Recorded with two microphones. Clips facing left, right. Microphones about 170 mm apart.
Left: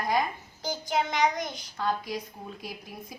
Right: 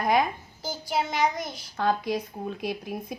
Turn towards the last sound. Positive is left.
turn(degrees=-65)  # may be behind; listen again after turning